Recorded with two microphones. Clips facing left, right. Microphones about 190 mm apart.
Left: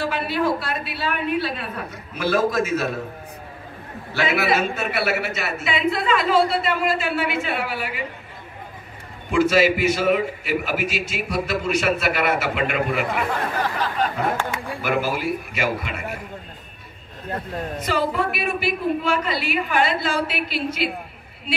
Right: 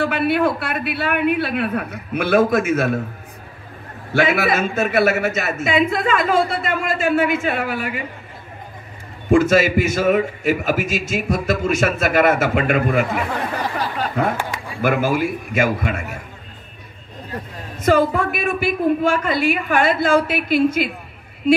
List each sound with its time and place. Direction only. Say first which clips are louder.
0.0 s a man's voice: right 5 dB; 60° right (ahead or behind)
4.1 s a man's voice: right 3 dB; 50° right (ahead or behind)
9.3 s a man's voice: right 3 dB; 45° right (ahead or behind)
13.6 s a sound: right 1 dB; 10° right (ahead or behind)
14.8 s a man's voice: right 6 dB; 50° right (ahead or behind)
17.7 s a man's voice: right 7 dB; 50° right (ahead or behind)